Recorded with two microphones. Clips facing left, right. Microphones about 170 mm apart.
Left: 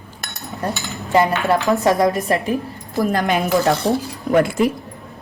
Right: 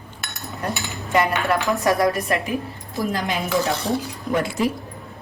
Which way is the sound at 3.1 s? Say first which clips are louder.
Left 5 dB; 55° left (ahead or behind).